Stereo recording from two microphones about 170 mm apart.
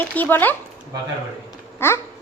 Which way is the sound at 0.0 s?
10° left (ahead or behind).